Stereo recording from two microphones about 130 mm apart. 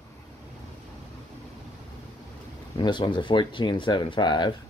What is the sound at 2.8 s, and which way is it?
Speech, 35° left (ahead or behind).